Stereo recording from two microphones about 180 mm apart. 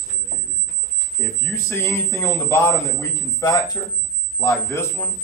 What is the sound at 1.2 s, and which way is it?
A man's voice, 10° left (ahead or behind).